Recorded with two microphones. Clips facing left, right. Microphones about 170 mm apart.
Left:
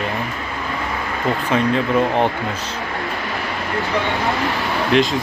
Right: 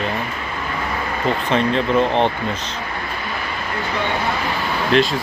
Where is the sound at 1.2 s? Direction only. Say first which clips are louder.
Left 1 dB; 10° left (ahead or behind).